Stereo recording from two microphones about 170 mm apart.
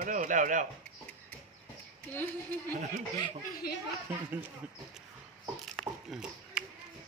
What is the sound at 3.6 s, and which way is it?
Speech, 60° left (ahead or behind).